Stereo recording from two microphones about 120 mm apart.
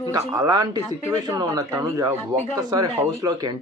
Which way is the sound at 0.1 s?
30° right (ahead or behind).